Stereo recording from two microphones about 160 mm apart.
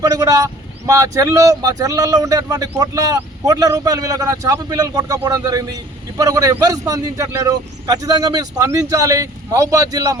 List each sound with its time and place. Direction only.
0.0 s speech: 20° right (ahead or behind)